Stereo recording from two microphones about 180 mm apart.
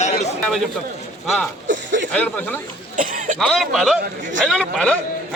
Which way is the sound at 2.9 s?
50° right (ahead or behind).